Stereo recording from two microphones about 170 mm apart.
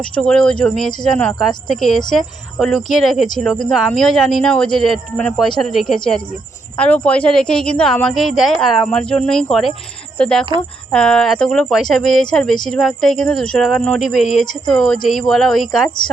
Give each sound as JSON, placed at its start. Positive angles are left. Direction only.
{"t": 0.0, "sound": "speech", "side_deg": 5}